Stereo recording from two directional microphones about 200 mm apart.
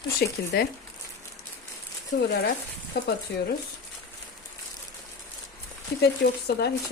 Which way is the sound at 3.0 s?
55° left (ahead or behind).